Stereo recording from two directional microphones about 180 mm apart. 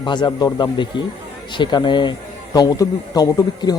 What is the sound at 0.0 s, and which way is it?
Speech, 25° left (ahead or behind).